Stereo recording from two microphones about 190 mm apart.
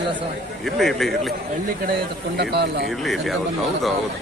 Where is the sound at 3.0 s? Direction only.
Centre (ahead or behind).